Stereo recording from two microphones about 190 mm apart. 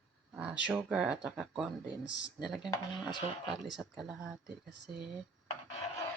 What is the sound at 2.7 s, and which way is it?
Speech, 20° left (ahead or behind).